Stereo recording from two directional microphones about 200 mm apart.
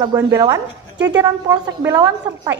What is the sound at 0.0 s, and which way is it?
A woman's voice, 20° right (ahead or behind).